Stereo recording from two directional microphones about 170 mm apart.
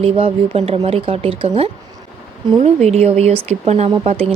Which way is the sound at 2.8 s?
40° right (ahead or behind).